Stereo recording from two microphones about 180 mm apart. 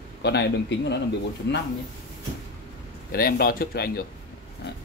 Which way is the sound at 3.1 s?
55° left (ahead or behind).